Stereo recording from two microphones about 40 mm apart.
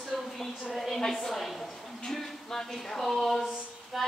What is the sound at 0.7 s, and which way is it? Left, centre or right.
Speech, centre.